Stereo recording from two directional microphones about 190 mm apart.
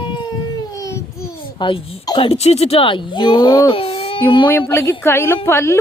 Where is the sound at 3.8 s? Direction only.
30° left (ahead or behind).